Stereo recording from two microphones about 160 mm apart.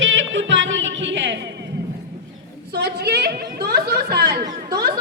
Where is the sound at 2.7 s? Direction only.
90° right.